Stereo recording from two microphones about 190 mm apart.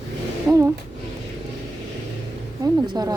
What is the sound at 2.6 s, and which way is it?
Speech, 20° right (ahead or behind).